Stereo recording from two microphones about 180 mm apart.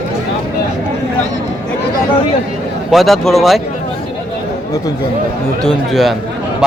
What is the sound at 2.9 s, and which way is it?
Speech, centre (ahead or behind).